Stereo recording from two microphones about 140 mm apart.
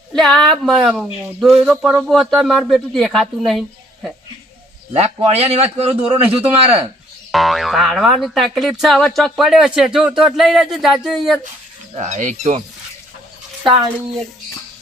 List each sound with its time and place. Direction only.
0.1 s a woman's voice: 5° left (ahead or behind)
4.9 s a man's voice: 45° right (ahead or behind)
7.3 s speech: centre (ahead or behind)
11.9 s speech: 60° right (ahead or behind)